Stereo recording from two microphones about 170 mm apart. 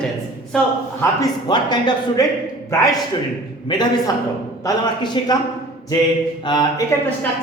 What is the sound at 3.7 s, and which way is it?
A man's voice, 25° left (ahead or behind).